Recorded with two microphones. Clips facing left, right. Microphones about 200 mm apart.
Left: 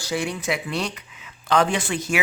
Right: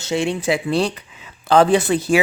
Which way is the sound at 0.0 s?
25° right (ahead or behind).